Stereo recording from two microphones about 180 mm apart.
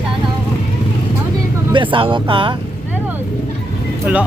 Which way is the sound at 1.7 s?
30° right (ahead or behind).